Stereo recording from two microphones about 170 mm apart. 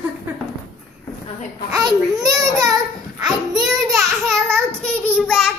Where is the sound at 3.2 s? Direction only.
5° right (ahead or behind).